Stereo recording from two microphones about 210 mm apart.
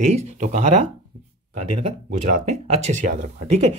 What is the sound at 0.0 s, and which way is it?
Speech, 30° right (ahead or behind).